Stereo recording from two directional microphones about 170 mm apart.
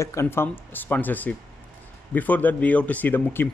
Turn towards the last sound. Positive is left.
turn(degrees=10)  # may be behind; listen again after turning